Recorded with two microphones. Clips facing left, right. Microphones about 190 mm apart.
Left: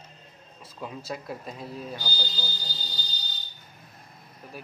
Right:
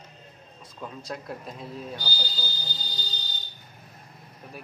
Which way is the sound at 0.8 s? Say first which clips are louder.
Left 1 dB; 5° left (ahead or behind).